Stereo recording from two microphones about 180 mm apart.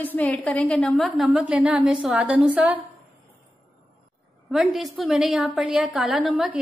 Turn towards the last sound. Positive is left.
turn(degrees=0)  # may be behind; listen again after turning